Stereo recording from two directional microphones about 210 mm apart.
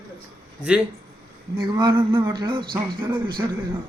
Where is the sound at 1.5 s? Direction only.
20° right (ahead or behind).